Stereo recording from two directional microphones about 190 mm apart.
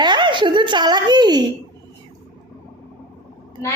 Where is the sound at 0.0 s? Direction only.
25° right (ahead or behind).